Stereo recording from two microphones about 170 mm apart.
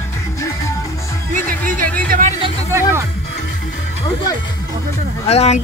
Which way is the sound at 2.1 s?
50° right (ahead or behind).